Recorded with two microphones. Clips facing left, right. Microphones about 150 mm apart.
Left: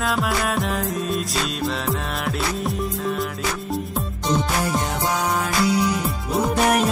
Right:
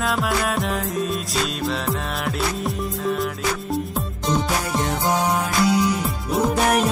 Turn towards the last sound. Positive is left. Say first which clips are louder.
# even
turn(degrees=0)  # may be behind; listen again after turning